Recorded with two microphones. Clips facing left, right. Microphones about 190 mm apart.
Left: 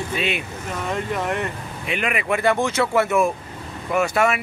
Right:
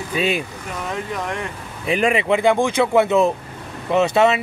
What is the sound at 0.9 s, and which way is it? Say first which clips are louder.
Speech: left 2 dB; 5° left (ahead or behind).